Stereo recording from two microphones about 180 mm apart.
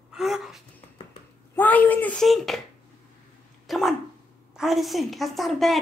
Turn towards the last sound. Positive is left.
turn(degrees=0)  # may be behind; listen again after turning